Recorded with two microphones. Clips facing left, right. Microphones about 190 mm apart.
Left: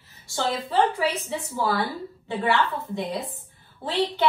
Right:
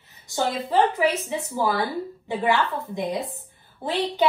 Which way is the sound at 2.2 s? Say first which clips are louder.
Right 1 dB; 15° right (ahead or behind).